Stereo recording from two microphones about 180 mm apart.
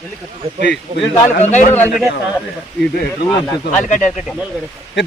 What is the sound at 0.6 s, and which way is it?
Speech, 75° left (ahead or behind).